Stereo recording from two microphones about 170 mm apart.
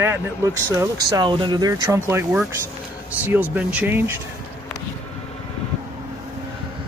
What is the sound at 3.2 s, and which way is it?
Speech, 10° right (ahead or behind).